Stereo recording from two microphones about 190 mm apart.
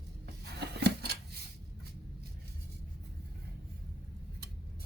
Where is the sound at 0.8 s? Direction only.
60° right (ahead or behind).